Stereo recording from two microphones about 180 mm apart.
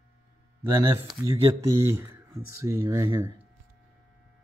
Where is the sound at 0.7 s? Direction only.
15° right (ahead or behind).